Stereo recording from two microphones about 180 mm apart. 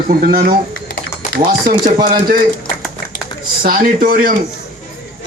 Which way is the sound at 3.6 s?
50° right (ahead or behind).